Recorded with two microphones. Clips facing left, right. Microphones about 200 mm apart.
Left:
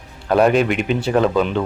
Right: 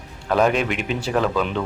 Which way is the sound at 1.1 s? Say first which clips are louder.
Left 4 dB; 30° left (ahead or behind).